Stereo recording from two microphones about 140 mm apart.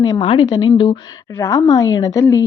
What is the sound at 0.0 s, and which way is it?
A woman's voice, 30° left (ahead or behind).